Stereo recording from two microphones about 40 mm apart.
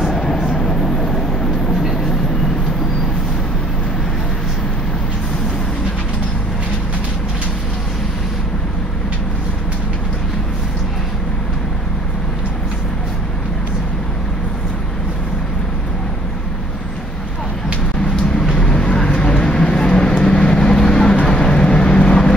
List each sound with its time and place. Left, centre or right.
0.0 s vehicle: centre
18.6 s vehicle: left